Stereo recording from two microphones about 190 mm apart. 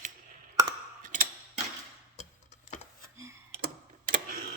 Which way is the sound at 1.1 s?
45° right (ahead or behind).